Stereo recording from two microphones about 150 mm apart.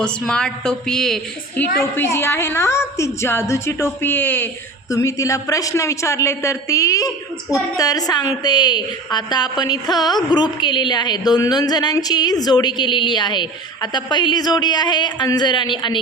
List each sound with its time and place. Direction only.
0.0 s a woman's voice: 5° left (ahead or behind)
1.8 s a woman's voice: 15° left (ahead or behind)